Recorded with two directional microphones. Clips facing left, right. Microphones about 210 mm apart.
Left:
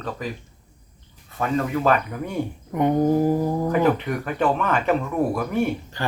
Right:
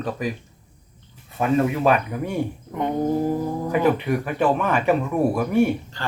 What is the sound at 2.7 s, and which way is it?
Speech, 15° left (ahead or behind).